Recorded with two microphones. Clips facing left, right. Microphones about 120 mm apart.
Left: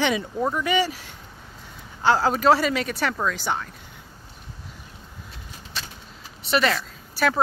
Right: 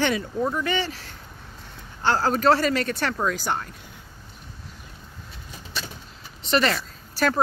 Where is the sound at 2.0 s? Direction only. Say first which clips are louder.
Left 1 dB; 5° left (ahead or behind).